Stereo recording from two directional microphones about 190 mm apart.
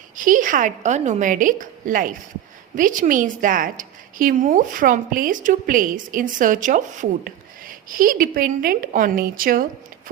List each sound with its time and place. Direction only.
0.2 s a woman's voice: 45° right (ahead or behind)